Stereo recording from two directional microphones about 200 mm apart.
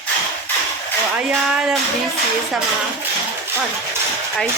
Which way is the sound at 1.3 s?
5° right (ahead or behind).